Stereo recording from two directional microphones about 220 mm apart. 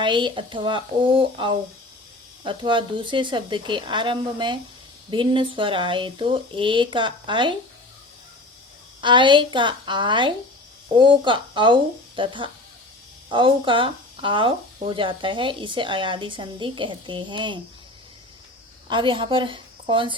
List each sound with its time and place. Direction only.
0.0 s speech: 20° right (ahead or behind)
9.0 s speech: 20° right (ahead or behind)
18.9 s a woman's voice: 20° right (ahead or behind)